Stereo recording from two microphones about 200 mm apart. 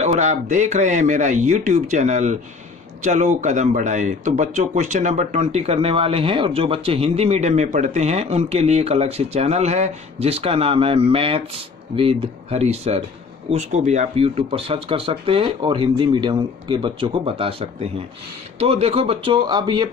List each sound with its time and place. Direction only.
0.0 s speech: 35° right (ahead or behind)